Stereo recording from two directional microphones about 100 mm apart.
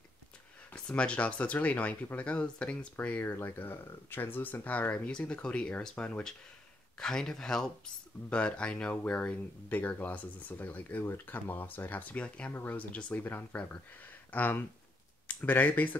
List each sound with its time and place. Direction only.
0.7 s speech: 10° left (ahead or behind)